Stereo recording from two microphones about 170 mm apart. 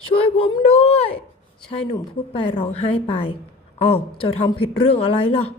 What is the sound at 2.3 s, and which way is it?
A woman's voice, 30° left (ahead or behind).